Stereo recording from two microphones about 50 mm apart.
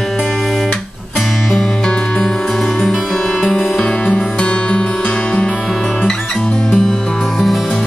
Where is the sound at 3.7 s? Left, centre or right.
Centre.